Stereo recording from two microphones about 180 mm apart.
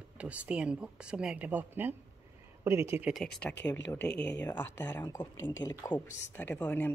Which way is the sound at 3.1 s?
Centre (ahead or behind).